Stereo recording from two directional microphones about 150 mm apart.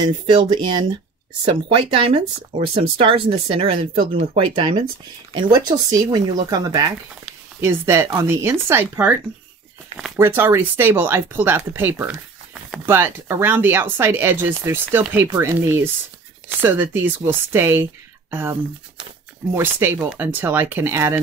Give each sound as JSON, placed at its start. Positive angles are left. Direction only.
{"t": 0.0, "sound": "speech", "side_deg": -30}
{"t": 3.9, "sound": "speech", "side_deg": -75}
{"t": 4.2, "sound": "speech", "side_deg": -45}